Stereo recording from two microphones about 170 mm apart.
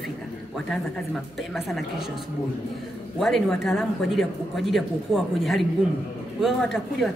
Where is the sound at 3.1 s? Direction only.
Centre (ahead or behind).